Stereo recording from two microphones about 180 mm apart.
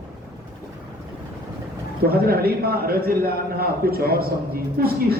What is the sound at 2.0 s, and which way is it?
A man's voice, 60° right (ahead or behind).